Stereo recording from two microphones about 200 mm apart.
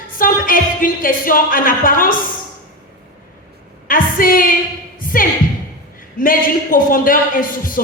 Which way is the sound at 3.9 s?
45° left (ahead or behind).